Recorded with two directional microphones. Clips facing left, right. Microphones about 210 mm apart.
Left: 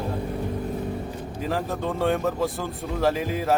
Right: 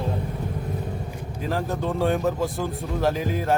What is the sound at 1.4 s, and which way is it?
Speech, centre (ahead or behind).